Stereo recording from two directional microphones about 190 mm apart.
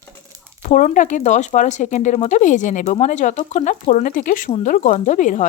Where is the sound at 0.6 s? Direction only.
40° left (ahead or behind).